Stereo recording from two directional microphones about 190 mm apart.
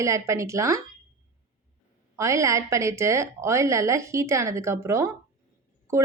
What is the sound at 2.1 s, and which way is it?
Speech, 15° right (ahead or behind).